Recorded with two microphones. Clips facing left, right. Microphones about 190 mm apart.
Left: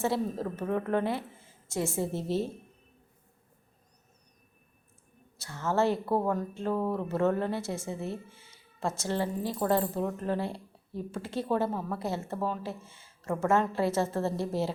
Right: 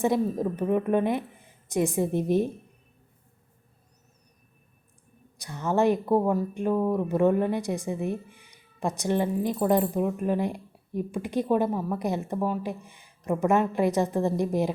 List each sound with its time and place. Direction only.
0.0 s a woman's voice: 15° right (ahead or behind)
5.4 s a woman's voice: 15° right (ahead or behind)